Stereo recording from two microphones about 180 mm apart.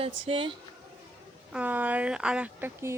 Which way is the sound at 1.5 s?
10° right (ahead or behind).